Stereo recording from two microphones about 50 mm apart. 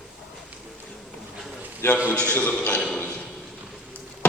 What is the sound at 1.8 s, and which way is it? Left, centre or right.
Speech, left.